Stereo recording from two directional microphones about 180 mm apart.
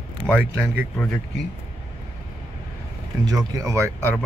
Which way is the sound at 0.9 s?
5° left (ahead or behind).